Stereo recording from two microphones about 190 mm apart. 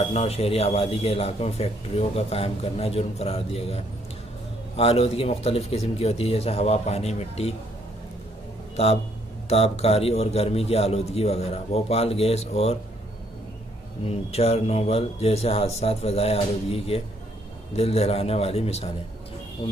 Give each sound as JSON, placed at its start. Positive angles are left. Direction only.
{"t": 0.0, "sound": "speech", "side_deg": 30}
{"t": 8.7, "sound": "a man's voice", "side_deg": 35}
{"t": 14.0, "sound": "speech", "side_deg": 30}